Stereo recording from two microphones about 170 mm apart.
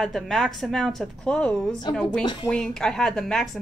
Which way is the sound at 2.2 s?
25° left (ahead or behind).